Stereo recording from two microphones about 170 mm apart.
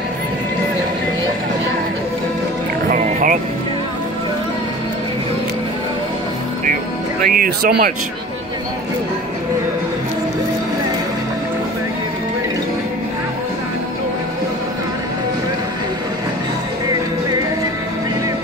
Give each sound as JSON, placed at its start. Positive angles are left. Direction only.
{"t": 2.9, "sound": "music", "side_deg": -50}
{"t": 7.2, "sound": "speech", "side_deg": -55}